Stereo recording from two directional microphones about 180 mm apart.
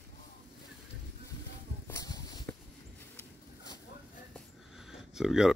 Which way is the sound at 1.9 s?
20° left (ahead or behind).